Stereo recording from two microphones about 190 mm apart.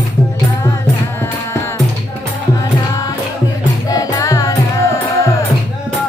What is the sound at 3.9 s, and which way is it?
Music, 20° left (ahead or behind).